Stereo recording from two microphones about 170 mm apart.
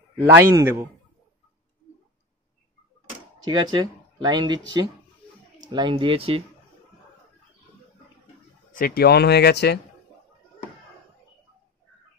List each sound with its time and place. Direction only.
0.3 s a man's voice: 15° right (ahead or behind)
3.4 s speech: 25° right (ahead or behind)
8.7 s speech: 60° left (ahead or behind); by 9.8 s 75° left (ahead or behind)